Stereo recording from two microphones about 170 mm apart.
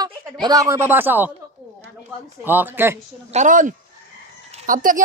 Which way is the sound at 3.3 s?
45° right (ahead or behind).